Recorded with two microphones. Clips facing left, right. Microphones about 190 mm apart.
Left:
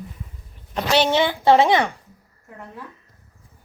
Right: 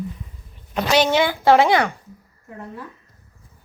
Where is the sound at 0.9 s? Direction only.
25° left (ahead or behind).